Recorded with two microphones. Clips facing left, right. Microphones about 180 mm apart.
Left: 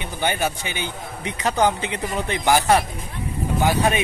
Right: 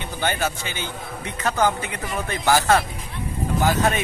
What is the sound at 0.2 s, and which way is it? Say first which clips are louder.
A man's voice: left 1 dB; 15° left (ahead or behind).